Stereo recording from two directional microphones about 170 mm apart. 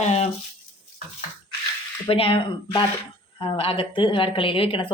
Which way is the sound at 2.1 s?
35° left (ahead or behind).